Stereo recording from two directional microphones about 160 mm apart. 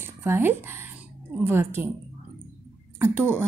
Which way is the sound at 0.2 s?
15° right (ahead or behind).